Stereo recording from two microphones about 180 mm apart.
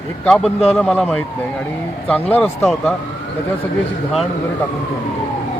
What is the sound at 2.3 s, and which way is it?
Speech, 10° left (ahead or behind).